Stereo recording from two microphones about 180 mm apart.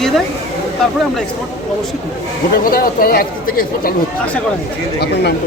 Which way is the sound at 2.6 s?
55° left (ahead or behind).